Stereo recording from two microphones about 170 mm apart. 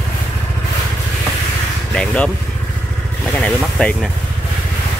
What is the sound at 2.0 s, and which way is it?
Speech, 5° left (ahead or behind).